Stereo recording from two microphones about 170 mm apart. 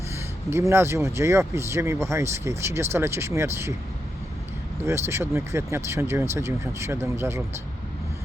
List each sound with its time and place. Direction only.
0.2 s speech: 15° right (ahead or behind)
4.8 s speech: 15° right (ahead or behind)